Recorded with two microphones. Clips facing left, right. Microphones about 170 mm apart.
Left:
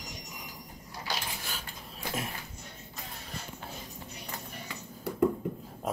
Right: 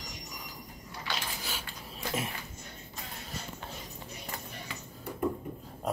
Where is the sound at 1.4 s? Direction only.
Centre (ahead or behind).